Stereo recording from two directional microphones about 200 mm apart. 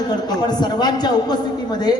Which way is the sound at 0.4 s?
20° left (ahead or behind).